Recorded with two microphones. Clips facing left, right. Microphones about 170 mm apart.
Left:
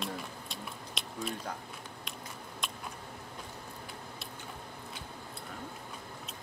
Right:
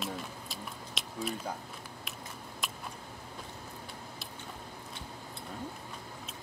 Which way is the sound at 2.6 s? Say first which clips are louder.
Even; 5° right (ahead or behind).